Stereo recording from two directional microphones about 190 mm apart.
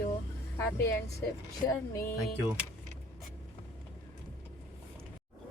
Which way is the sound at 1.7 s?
15° left (ahead or behind).